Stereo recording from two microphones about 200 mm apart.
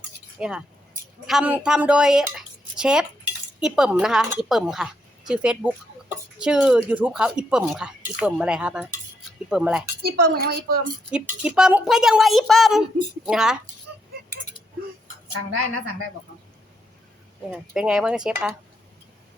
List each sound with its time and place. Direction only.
0.3 s speech: 5° right (ahead or behind)
10.0 s a woman's voice: 50° right (ahead or behind)
11.1 s speech: 5° right (ahead or behind)
17.5 s speech: 5° right (ahead or behind)